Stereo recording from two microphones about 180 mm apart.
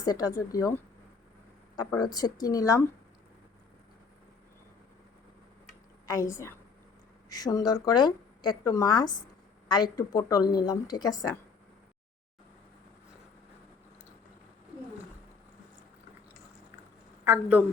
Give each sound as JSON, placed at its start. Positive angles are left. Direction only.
{"t": 0.0, "sound": "a woman's voice", "side_deg": 20}
{"t": 1.7, "sound": "a woman's voice", "side_deg": 20}
{"t": 6.1, "sound": "a woman's voice", "side_deg": 20}
{"t": 17.2, "sound": "speech", "side_deg": -10}